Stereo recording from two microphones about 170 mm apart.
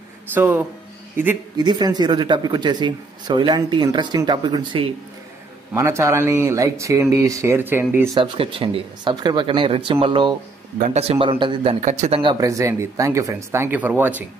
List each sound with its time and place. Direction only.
0.3 s speech: 10° right (ahead or behind)
1.6 s speech: 25° right (ahead or behind)
5.7 s speech: 15° right (ahead or behind)
8.2 s speech: 30° right (ahead or behind)
11.8 s a man's voice: 45° right (ahead or behind)
12.2 s speech: 25° right (ahead or behind)